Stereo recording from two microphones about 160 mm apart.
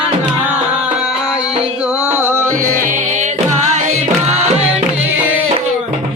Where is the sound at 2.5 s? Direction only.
55° right (ahead or behind).